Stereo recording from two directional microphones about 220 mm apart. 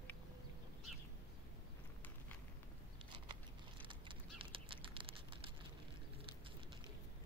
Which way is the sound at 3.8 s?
25° right (ahead or behind).